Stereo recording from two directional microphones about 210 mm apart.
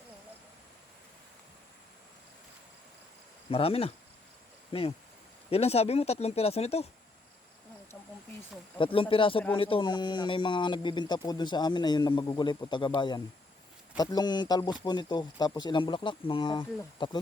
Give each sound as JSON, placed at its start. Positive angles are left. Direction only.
{"t": 3.5, "sound": "speech", "side_deg": 30}
{"t": 8.8, "sound": "speech", "side_deg": 25}